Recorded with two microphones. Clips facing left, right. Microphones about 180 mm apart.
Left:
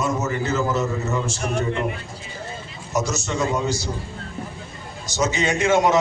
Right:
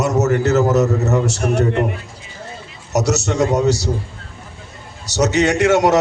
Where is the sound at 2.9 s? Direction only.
75° right (ahead or behind).